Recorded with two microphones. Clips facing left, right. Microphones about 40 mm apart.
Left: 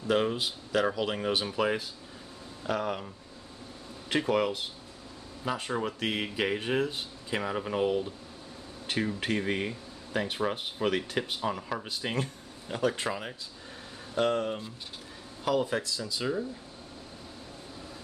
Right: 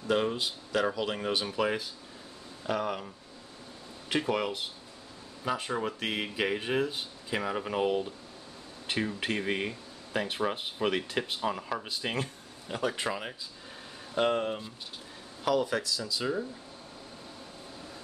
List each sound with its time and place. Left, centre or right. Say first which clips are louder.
0.1 s speech: left 1 dB; centre
4.1 s speech: left 2 dB; centre
15.6 s speech: even; left